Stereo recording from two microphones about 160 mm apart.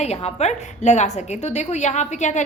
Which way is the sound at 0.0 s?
40° left (ahead or behind).